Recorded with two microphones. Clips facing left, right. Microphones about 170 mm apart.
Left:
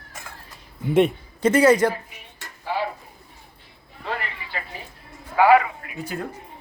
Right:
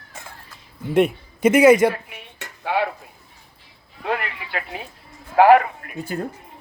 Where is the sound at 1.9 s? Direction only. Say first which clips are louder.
Right 3 dB; 70° right (ahead or behind).